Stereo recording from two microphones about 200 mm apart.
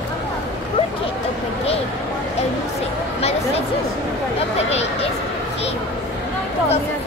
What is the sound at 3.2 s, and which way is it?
Chatter, 30° left (ahead or behind).